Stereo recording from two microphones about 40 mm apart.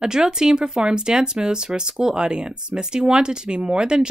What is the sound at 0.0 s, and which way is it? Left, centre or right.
Speech, centre.